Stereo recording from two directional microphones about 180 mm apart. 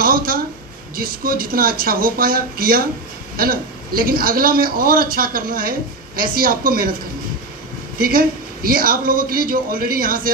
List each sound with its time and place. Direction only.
0.0 s a sound: 55° right (ahead or behind)
0.9 s a woman's voice: 55° right (ahead or behind)
8.0 s a woman's voice: 50° right (ahead or behind)